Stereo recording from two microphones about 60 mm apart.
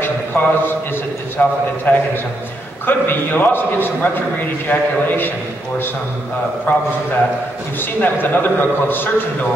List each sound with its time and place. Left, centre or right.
0.0 s a sound: left
1.4 s a man's voice: left
6.7 s a man's voice: left